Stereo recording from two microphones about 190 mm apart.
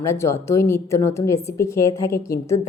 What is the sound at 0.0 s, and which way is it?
Speech, 15° left (ahead or behind).